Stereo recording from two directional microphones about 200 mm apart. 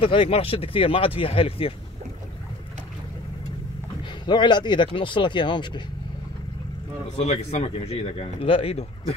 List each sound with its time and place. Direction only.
0.0 s speech: 25° left (ahead or behind)
4.3 s speech: 20° left (ahead or behind)
7.2 s a man's voice: 30° left (ahead or behind)